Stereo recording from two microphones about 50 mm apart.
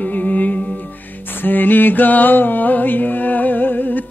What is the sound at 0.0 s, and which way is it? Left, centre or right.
Music, left.